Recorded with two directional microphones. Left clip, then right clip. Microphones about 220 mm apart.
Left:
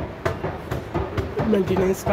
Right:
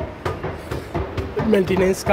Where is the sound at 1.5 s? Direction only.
25° right (ahead or behind).